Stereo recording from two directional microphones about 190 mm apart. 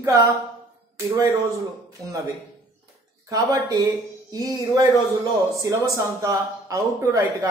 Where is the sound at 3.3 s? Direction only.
20° right (ahead or behind).